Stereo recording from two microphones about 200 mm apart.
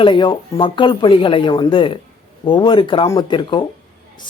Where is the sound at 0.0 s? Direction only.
25° left (ahead or behind).